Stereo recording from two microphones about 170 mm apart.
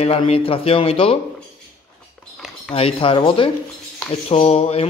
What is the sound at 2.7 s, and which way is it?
Speech, 35° left (ahead or behind).